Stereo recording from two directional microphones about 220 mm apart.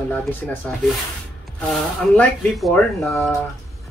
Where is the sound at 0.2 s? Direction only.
5° left (ahead or behind).